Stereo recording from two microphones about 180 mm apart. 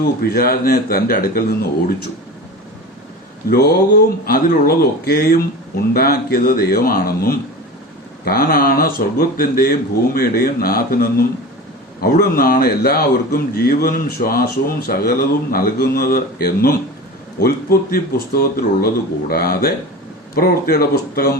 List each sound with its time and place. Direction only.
0.2 s speech: 55° left (ahead or behind)
3.5 s speech: 60° left (ahead or behind)